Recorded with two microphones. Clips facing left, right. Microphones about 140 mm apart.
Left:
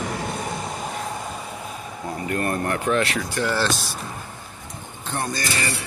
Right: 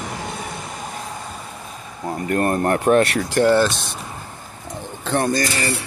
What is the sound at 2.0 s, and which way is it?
Speech, 40° right (ahead or behind).